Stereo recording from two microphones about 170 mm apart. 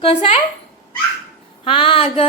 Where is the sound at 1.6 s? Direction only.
30° left (ahead or behind).